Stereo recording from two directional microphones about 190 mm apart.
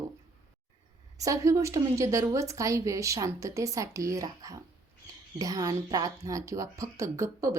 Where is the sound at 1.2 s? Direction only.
15° right (ahead or behind).